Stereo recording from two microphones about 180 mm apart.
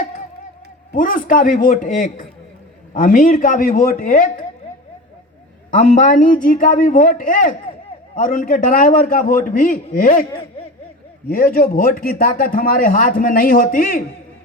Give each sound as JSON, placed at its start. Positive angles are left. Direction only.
{"t": 0.9, "sound": "speech", "side_deg": 50}
{"t": 5.7, "sound": "speech", "side_deg": 45}
{"t": 11.3, "sound": "speech", "side_deg": 55}